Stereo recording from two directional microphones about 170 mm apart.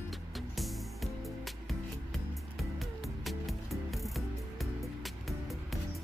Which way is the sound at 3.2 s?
Centre (ahead or behind).